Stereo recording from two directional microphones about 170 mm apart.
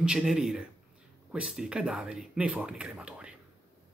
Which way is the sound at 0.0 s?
5° right (ahead or behind).